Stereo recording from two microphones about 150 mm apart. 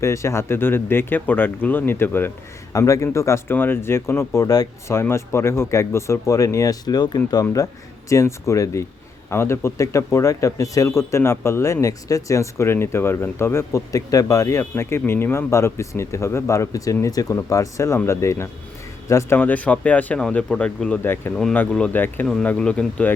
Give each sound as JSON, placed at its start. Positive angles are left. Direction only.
{"t": 0.0, "sound": "speech", "side_deg": 20}
{"t": 21.3, "sound": "speech", "side_deg": 0}